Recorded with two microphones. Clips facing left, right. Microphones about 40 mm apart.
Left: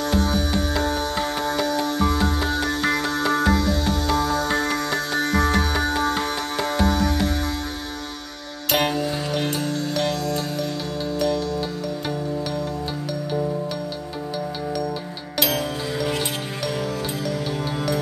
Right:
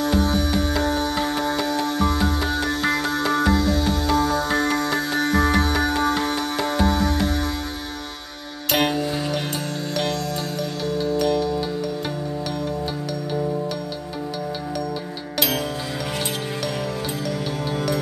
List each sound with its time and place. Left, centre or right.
0.0 s music: centre
8.7 s music: centre
11.2 s music: right
15.3 s music: centre